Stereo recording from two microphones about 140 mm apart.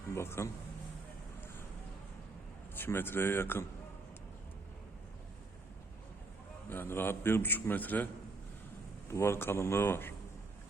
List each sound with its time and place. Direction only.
0.1 s speech: 20° left (ahead or behind)
2.7 s a man's voice: 15° left (ahead or behind)
6.7 s a man's voice: 15° left (ahead or behind)